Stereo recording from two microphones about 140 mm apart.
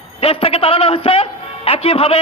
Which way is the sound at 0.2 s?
45° left (ahead or behind).